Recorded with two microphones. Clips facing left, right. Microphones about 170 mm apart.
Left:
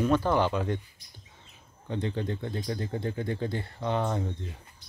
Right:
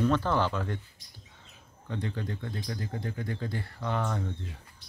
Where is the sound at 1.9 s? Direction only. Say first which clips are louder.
Left 4 dB; 25° left (ahead or behind).